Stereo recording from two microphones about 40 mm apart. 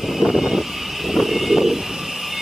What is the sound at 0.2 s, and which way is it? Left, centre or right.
Vehicle, centre.